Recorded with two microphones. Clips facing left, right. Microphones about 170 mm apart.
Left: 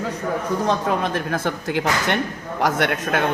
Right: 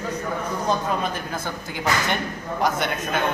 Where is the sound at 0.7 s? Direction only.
80° left.